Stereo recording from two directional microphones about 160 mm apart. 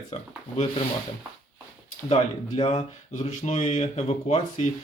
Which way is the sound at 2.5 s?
45° left (ahead or behind).